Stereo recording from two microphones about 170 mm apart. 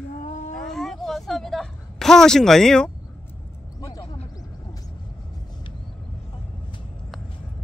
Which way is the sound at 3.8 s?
20° left (ahead or behind).